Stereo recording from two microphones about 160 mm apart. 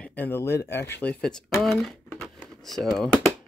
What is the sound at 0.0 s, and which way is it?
Speech, 10° left (ahead or behind).